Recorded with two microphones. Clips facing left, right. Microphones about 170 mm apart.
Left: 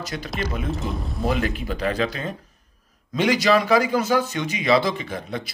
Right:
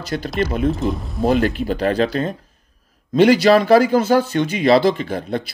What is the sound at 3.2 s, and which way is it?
Speech, 30° right (ahead or behind).